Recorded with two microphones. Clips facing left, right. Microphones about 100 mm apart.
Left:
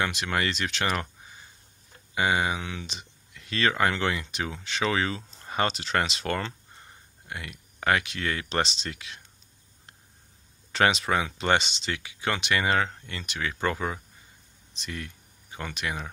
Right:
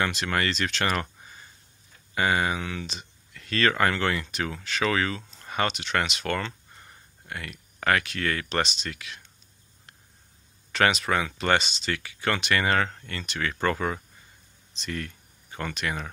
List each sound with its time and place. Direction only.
0.0 s speech: 10° left (ahead or behind); by 9.2 s 30° left (ahead or behind)
10.7 s speech: 25° left (ahead or behind)